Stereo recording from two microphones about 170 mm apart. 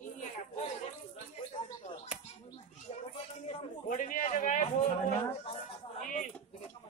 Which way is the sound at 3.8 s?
50° left (ahead or behind).